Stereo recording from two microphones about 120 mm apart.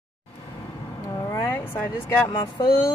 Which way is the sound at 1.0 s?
25° left (ahead or behind).